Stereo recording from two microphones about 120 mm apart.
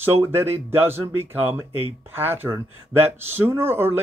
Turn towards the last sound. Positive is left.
turn(degrees=-20)  # may be behind; listen again after turning